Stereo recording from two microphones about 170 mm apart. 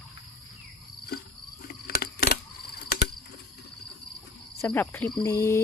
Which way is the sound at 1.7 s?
65° left (ahead or behind).